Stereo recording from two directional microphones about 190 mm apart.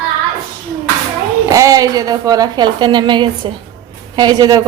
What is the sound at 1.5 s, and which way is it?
A woman's voice, 15° right (ahead or behind).